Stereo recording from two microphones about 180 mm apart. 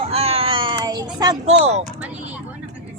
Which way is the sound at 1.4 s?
40° right (ahead or behind).